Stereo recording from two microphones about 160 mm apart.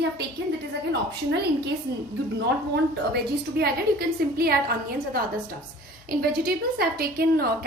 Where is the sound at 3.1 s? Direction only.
75° right (ahead or behind).